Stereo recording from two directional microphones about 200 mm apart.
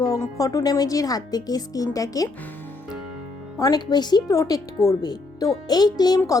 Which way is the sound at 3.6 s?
20° left (ahead or behind).